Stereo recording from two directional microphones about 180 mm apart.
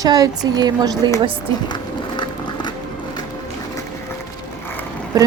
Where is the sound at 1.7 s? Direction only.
25° left (ahead or behind).